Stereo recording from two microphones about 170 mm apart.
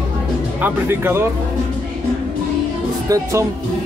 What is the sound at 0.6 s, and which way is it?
Speech, 15° right (ahead or behind).